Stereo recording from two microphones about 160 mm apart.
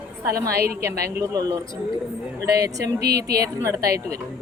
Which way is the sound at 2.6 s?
90° right.